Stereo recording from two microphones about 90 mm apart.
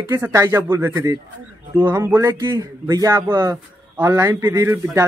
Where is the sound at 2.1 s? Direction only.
35° right (ahead or behind).